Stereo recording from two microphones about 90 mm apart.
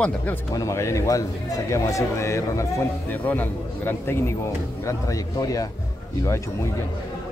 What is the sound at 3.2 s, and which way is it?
Speech, 20° left (ahead or behind).